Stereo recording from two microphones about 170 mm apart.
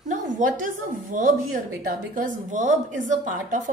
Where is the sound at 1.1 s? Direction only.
55° right (ahead or behind).